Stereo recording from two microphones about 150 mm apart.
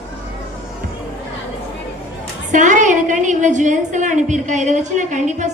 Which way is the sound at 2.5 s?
55° right (ahead or behind).